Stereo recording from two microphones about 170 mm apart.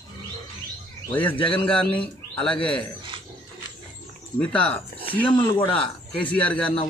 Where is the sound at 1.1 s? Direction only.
10° left (ahead or behind).